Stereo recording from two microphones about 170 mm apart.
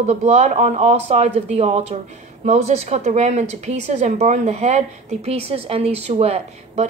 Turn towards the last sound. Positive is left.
turn(degrees=-40)  # may be behind; listen again after turning